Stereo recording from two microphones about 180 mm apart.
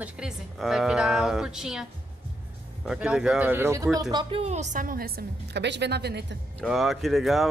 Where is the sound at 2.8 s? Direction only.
5° right (ahead or behind); by 4.2 s 20° right (ahead or behind).